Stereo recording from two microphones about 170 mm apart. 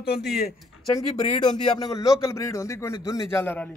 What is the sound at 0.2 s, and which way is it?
Speech, 70° left (ahead or behind).